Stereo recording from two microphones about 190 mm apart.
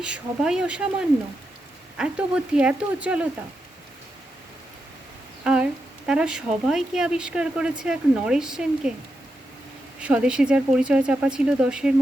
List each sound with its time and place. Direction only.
0.0 s speech: 5° right (ahead or behind)
5.4 s a sound: 5° right (ahead or behind)
6.1 s speech: 5° right (ahead or behind)
10.0 s speech: 5° right (ahead or behind)